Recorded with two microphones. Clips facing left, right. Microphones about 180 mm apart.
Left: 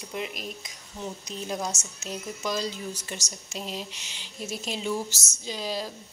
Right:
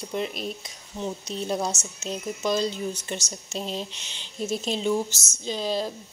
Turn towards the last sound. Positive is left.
turn(degrees=-25)  # may be behind; listen again after turning